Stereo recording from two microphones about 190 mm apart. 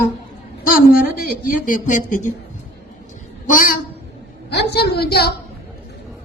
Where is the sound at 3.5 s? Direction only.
45° left (ahead or behind).